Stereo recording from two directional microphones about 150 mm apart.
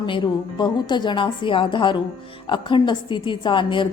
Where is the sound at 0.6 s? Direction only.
30° left (ahead or behind).